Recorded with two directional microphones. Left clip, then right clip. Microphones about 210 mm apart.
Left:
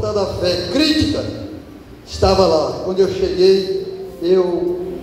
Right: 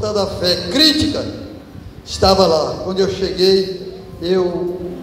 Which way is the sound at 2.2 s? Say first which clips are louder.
Right 1 dB; 35° right (ahead or behind).